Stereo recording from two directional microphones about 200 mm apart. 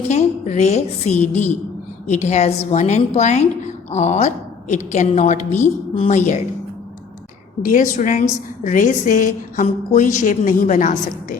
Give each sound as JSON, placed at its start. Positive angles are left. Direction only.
{"t": 0.1, "sound": "a woman's voice", "side_deg": 35}
{"t": 7.6, "sound": "a woman's voice", "side_deg": 40}